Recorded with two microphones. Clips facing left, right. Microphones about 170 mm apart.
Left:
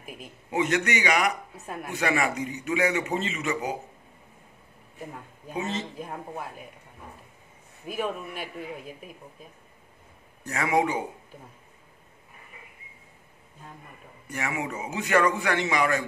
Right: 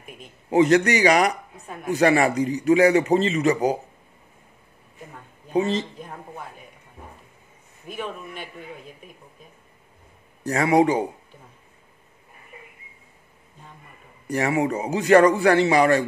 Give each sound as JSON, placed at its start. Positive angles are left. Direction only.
{"t": 0.0, "sound": "a sound", "side_deg": 5}
{"t": 0.5, "sound": "a man's voice", "side_deg": -35}
{"t": 5.5, "sound": "a man's voice", "side_deg": -35}
{"t": 5.9, "sound": "a man's voice", "side_deg": 5}
{"t": 7.8, "sound": "a man's voice", "side_deg": 5}
{"t": 10.4, "sound": "a man's voice", "side_deg": -35}
{"t": 14.2, "sound": "a man's voice", "side_deg": -35}